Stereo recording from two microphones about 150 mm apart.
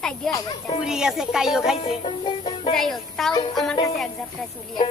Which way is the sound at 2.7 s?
Centre (ahead or behind).